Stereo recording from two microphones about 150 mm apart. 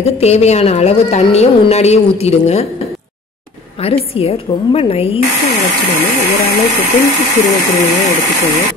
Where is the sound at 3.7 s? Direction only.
40° left (ahead or behind).